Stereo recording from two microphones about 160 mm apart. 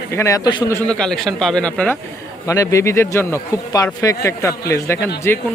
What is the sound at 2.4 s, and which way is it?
A man's voice, 20° left (ahead or behind).